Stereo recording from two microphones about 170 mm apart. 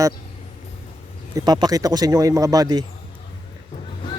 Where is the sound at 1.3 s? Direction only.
25° right (ahead or behind).